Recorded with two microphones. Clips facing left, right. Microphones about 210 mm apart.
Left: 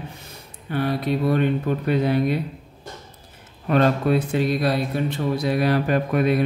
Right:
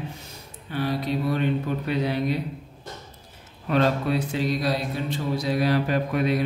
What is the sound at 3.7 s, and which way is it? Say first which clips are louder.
Speech: left 4 dB; 55° left (ahead or behind).